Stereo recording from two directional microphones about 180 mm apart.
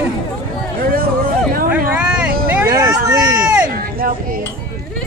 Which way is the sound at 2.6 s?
20° right (ahead or behind).